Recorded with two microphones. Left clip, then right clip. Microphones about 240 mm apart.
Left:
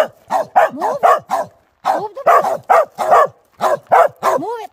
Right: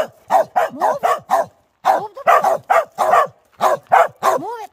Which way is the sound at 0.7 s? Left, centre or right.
Centre.